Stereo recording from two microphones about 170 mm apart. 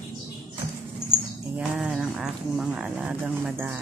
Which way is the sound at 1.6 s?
5° right (ahead or behind).